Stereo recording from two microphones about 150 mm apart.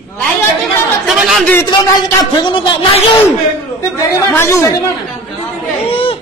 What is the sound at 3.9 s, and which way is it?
A man's voice, 15° left (ahead or behind).